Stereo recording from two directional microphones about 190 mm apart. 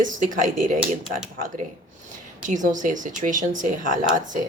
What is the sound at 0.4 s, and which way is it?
Speech, 45° right (ahead or behind).